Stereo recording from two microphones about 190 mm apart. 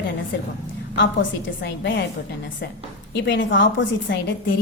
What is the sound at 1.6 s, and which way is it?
Speech, 65° left (ahead or behind).